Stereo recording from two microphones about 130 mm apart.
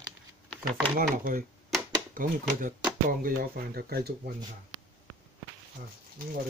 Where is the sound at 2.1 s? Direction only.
90° right.